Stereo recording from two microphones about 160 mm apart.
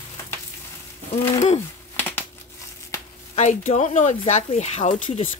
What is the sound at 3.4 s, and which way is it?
A woman's voice, 45° left (ahead or behind).